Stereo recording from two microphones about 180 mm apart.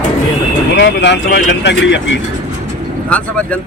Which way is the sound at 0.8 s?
80° left.